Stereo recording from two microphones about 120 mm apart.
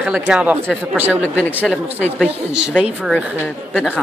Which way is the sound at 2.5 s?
5° right (ahead or behind).